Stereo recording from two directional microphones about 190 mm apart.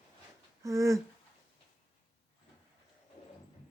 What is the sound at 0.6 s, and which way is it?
Speech, 15° right (ahead or behind).